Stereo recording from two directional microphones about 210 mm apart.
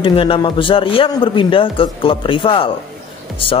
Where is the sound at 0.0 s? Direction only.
25° left (ahead or behind).